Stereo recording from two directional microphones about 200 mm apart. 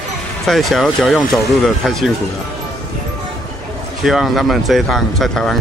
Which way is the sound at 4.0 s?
Centre (ahead or behind).